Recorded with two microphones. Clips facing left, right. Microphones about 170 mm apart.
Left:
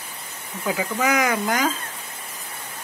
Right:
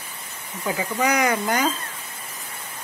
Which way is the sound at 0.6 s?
5° left (ahead or behind).